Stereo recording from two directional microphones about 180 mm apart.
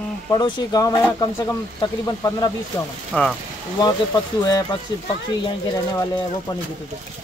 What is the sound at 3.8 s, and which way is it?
Speech, 20° left (ahead or behind).